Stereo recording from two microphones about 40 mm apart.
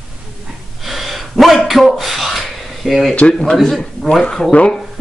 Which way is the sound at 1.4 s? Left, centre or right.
Centre.